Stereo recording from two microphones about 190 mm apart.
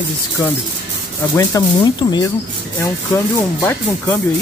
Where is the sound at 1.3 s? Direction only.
20° left (ahead or behind).